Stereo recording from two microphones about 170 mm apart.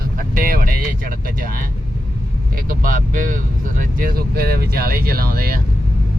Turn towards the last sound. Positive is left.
turn(degrees=-60)  # may be behind; listen again after turning